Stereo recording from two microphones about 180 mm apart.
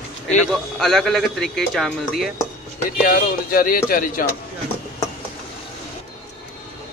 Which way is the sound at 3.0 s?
50° left (ahead or behind).